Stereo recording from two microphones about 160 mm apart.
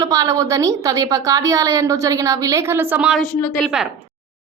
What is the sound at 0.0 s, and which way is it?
A woman's voice, 20° right (ahead or behind).